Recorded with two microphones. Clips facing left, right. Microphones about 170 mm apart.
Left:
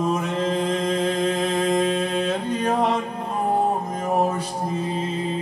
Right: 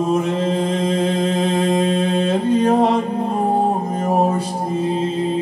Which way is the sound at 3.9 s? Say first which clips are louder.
Right 4 dB; 25° right (ahead or behind).